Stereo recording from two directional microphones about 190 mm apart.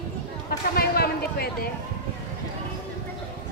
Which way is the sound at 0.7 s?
55° left (ahead or behind).